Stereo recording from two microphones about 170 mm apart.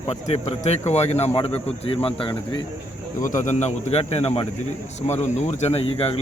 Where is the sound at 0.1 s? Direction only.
40° left (ahead or behind).